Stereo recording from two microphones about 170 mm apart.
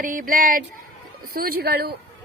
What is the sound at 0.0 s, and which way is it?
A woman's voice, 50° right (ahead or behind).